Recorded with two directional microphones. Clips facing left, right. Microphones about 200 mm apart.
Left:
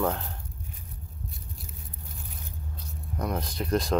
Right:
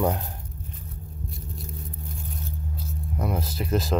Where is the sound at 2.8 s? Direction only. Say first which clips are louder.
Right 2 dB; 5° right (ahead or behind).